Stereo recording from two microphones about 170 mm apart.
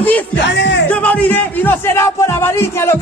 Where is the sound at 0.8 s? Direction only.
10° left (ahead or behind).